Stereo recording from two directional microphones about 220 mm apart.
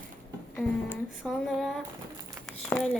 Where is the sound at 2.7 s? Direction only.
5° left (ahead or behind).